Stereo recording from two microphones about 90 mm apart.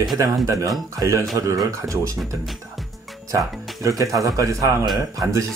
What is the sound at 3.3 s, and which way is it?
Speech, 40° right (ahead or behind).